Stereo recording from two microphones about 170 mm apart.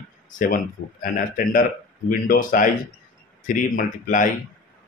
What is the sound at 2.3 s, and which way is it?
Speech, 50° left (ahead or behind).